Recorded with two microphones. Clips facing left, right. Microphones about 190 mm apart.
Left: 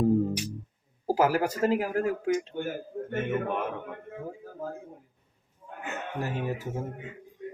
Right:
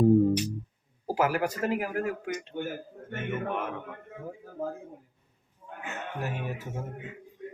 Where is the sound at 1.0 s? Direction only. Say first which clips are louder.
Left 3 dB; 30° left (ahead or behind).